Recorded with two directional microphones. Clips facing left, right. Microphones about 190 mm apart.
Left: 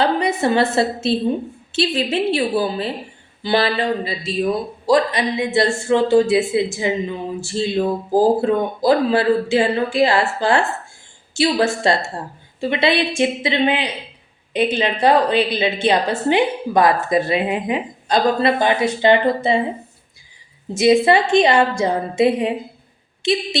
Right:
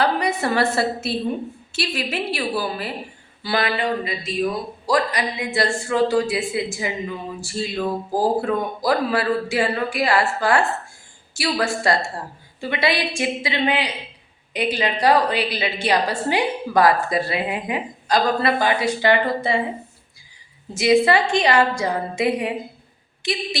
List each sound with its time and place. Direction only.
0.0 s a woman's voice: 25° left (ahead or behind)
20.7 s speech: 25° left (ahead or behind)